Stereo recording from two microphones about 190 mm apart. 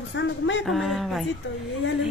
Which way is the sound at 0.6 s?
Centre (ahead or behind).